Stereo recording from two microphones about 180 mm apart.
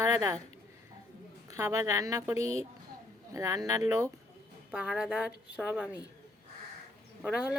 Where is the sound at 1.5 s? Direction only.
15° right (ahead or behind).